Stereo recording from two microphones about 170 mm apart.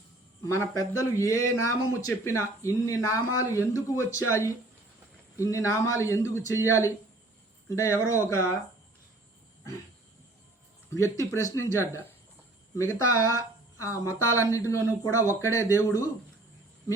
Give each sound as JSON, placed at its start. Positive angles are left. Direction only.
{"t": 0.4, "sound": "speech", "side_deg": 15}
{"t": 10.9, "sound": "speech", "side_deg": 20}